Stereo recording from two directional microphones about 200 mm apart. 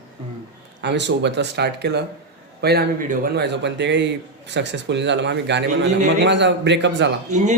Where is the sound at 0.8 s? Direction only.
60° right (ahead or behind).